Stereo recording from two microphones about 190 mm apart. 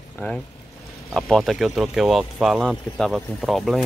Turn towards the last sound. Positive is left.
turn(degrees=0)  # may be behind; listen again after turning